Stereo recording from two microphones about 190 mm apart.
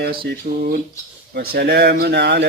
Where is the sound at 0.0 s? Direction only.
55° right (ahead or behind).